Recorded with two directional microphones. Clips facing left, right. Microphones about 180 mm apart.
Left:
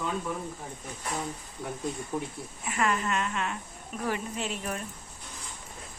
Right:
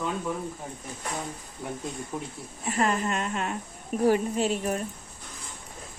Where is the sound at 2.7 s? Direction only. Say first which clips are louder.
Right 3 dB; 35° right (ahead or behind).